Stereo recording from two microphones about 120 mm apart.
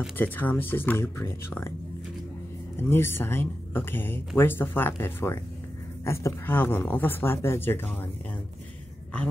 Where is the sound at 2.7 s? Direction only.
20° left (ahead or behind).